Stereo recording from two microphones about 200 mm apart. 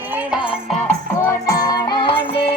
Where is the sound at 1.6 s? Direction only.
25° left (ahead or behind).